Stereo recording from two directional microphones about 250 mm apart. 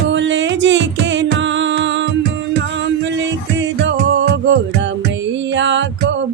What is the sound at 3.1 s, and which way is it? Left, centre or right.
Music, right.